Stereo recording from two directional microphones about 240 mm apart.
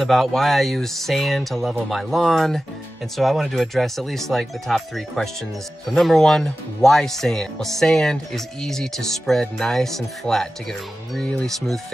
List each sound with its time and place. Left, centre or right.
0.0 s speech: centre